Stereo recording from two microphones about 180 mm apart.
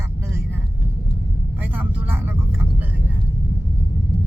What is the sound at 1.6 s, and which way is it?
Speech, 10° right (ahead or behind).